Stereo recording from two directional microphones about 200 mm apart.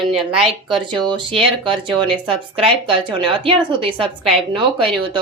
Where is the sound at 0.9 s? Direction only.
25° right (ahead or behind).